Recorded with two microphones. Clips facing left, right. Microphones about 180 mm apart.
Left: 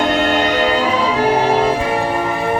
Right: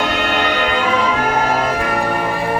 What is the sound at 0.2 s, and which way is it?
Music, 40° left (ahead or behind).